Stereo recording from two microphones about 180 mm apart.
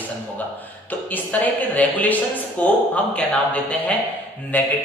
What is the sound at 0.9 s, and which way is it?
A man's voice, 10° left (ahead or behind).